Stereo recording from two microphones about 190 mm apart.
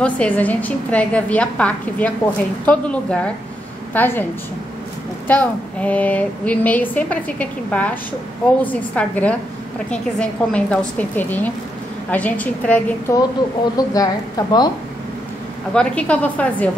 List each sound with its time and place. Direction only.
0.0 s a woman's voice: 5° left (ahead or behind)
5.3 s a woman's voice: 5° left (ahead or behind)
13.7 s a woman's voice: 20° left (ahead or behind)
15.7 s a woman's voice: 5° left (ahead or behind)